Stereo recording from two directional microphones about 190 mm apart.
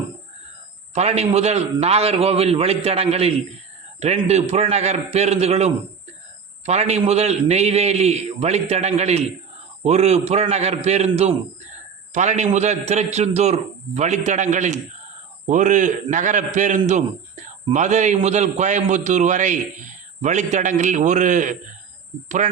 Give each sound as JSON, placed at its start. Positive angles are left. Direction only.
{"t": 0.9, "sound": "a man's voice", "side_deg": -35}